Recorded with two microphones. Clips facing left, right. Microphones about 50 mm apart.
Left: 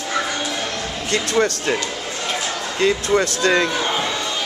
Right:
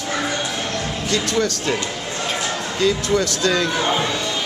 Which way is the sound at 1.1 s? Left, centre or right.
Left.